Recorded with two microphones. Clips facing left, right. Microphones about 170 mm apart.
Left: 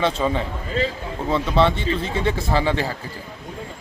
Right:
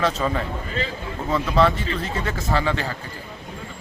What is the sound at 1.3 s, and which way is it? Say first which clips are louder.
Speech: left 1 dB; 25° left (ahead or behind).